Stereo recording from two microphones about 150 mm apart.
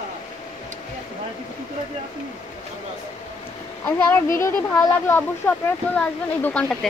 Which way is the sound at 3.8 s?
15° left (ahead or behind).